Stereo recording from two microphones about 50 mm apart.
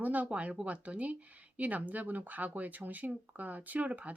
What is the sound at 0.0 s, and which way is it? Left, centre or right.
Speech, right.